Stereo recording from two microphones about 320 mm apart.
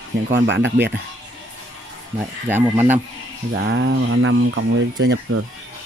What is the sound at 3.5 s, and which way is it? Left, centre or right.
Speech, right.